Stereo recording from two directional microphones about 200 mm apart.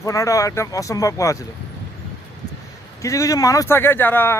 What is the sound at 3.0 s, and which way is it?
Speech, 15° left (ahead or behind).